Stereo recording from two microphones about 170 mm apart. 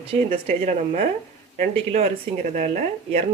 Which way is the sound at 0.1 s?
35° right (ahead or behind).